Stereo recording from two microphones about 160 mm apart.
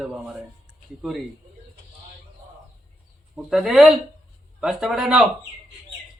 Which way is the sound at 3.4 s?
Centre (ahead or behind).